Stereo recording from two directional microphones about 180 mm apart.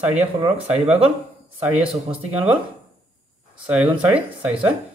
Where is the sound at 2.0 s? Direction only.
30° right (ahead or behind).